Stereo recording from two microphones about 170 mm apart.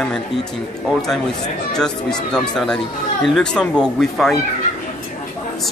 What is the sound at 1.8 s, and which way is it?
Speech, 5° left (ahead or behind).